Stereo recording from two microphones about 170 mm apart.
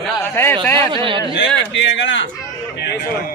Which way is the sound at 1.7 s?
90° left.